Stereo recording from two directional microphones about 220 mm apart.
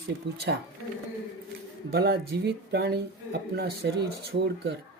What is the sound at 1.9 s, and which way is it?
Speech, 45° right (ahead or behind).